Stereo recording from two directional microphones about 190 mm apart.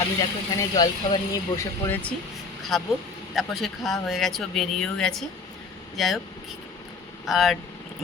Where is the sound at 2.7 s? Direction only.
Centre (ahead or behind).